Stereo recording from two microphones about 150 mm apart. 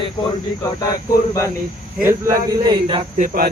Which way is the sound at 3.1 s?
70° right (ahead or behind).